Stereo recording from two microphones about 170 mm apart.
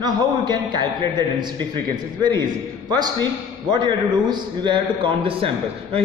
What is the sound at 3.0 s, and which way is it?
A man's voice, 25° right (ahead or behind).